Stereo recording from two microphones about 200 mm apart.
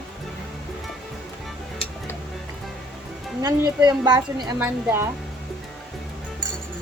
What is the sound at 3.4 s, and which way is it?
A woman's voice, 20° right (ahead or behind).